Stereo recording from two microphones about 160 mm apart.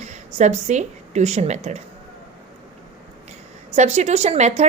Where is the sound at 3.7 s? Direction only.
45° right (ahead or behind).